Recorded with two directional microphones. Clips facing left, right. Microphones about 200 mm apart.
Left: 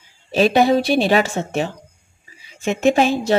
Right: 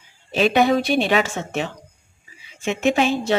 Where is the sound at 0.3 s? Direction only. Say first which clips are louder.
Left 2 dB; 35° left (ahead or behind).